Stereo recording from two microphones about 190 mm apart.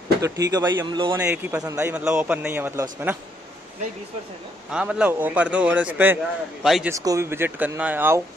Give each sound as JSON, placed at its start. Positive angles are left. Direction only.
{"t": 0.2, "sound": "speech", "side_deg": -20}
{"t": 1.2, "sound": "a man's voice", "side_deg": -10}
{"t": 4.6, "sound": "a man's voice", "side_deg": -5}
{"t": 6.9, "sound": "a man's voice", "side_deg": -15}